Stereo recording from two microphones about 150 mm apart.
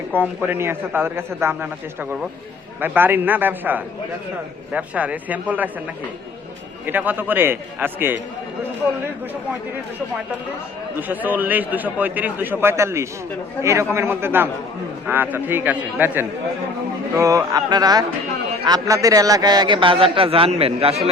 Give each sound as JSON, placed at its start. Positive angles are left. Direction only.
{"t": 0.1, "sound": "a man's voice", "side_deg": -10}
{"t": 2.8, "sound": "a man's voice", "side_deg": -15}
{"t": 6.8, "sound": "a man's voice", "side_deg": -10}
{"t": 11.1, "sound": "a man's voice", "side_deg": -10}